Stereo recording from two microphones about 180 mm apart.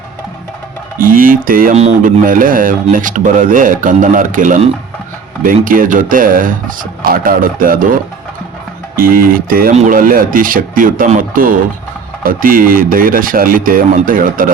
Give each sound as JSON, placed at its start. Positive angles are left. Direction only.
{"t": 0.9, "sound": "speech", "side_deg": -50}
{"t": 9.0, "sound": "speech", "side_deg": -50}